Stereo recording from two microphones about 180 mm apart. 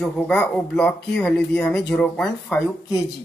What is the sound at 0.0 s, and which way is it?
Speech, 5° left (ahead or behind).